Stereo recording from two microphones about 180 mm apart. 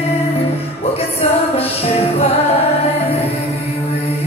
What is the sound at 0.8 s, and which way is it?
Music, 35° left (ahead or behind).